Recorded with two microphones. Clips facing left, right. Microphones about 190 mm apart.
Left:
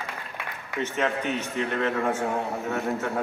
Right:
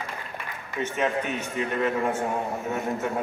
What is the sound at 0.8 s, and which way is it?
A man's voice, 15° right (ahead or behind).